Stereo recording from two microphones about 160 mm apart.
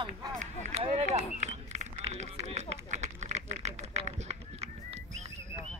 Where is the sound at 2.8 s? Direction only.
45° right (ahead or behind).